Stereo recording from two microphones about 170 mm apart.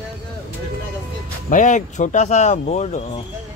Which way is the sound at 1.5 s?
45° left (ahead or behind).